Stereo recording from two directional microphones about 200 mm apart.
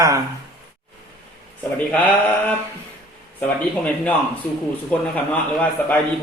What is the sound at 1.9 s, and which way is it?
Mantra, 10° left (ahead or behind).